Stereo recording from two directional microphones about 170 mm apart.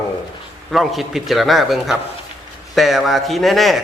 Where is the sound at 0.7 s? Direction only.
Centre (ahead or behind).